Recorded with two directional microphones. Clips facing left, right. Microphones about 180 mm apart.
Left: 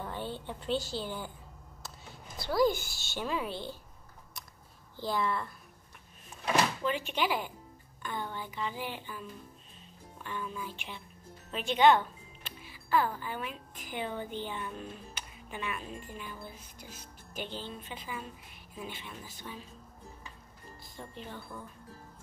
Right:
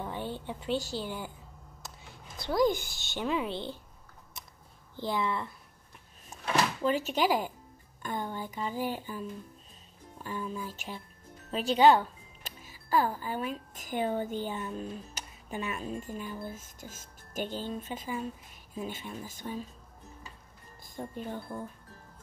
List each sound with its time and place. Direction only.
0.0 s a sound: 15° right (ahead or behind)
0.9 s a woman's voice: 10° right (ahead or behind)
2.6 s a woman's voice: 15° right (ahead or behind)
4.9 s a woman's voice: 20° right (ahead or behind)
6.3 s door: 40° right (ahead or behind)
6.8 s speech: 40° right (ahead or behind)
10.2 s speech: 40° right (ahead or behind)
20.8 s speech: 45° right (ahead or behind)